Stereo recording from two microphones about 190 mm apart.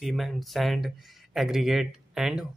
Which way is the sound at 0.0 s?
Centre (ahead or behind).